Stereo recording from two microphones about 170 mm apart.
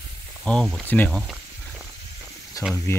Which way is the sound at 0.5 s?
Centre (ahead or behind).